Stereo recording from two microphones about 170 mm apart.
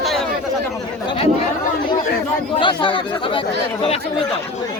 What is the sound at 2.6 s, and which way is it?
Speech, 30° left (ahead or behind).